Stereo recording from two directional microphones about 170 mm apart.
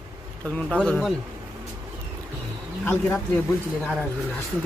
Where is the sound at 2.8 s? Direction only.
10° left (ahead or behind).